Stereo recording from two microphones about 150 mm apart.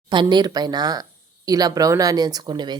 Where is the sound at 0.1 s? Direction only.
30° right (ahead or behind).